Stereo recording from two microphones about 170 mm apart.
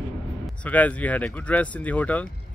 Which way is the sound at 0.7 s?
10° left (ahead or behind).